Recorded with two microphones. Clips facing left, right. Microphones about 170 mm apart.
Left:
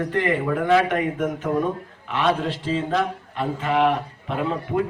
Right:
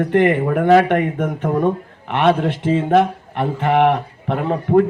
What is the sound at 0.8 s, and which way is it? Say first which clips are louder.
A man's voice: right 4 dB; 60° right (ahead or behind).